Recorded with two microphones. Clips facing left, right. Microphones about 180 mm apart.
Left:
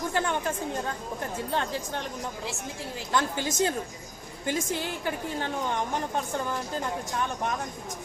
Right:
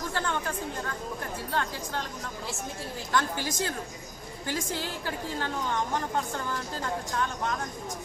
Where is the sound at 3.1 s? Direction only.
20° left (ahead or behind).